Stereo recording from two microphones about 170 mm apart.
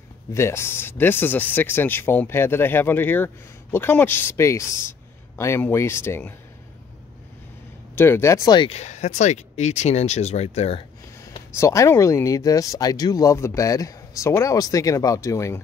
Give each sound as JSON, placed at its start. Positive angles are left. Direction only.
{"t": 0.3, "sound": "speech", "side_deg": 15}
{"t": 7.9, "sound": "speech", "side_deg": 15}
{"t": 11.5, "sound": "speech", "side_deg": 15}